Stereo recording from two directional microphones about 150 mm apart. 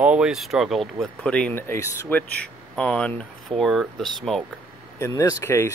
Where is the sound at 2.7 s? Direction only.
5° left (ahead or behind).